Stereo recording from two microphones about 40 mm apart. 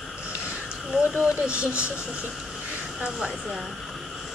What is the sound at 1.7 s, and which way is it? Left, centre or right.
Speech, left.